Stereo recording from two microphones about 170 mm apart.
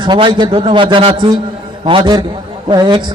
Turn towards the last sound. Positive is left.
turn(degrees=-25)  # may be behind; listen again after turning